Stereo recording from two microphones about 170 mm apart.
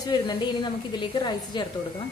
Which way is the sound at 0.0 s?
25° left (ahead or behind).